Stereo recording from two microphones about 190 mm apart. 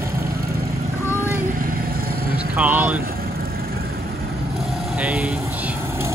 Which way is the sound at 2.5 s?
10° right (ahead or behind).